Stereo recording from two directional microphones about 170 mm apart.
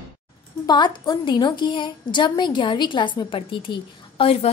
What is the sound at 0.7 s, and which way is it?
A woman's voice, 25° left (ahead or behind).